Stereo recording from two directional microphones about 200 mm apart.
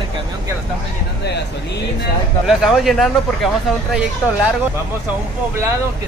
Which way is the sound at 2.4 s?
Centre (ahead or behind).